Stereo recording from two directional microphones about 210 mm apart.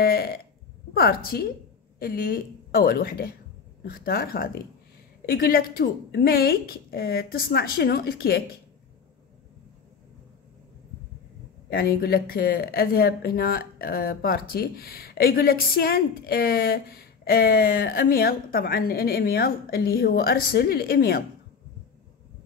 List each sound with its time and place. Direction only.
0.0 s burping: 45° left (ahead or behind)
0.9 s speech: 45° left (ahead or behind)
11.7 s speech: 45° left (ahead or behind)